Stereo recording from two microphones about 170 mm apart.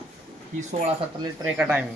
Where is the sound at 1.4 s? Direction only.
10° right (ahead or behind).